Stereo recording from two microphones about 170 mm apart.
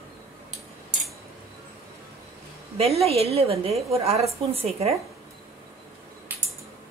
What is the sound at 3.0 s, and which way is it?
A woman's voice, 35° right (ahead or behind).